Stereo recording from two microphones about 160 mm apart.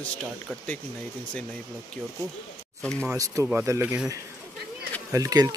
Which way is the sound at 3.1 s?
20° right (ahead or behind).